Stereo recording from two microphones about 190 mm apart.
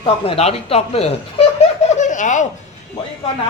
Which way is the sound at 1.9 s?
40° left (ahead or behind).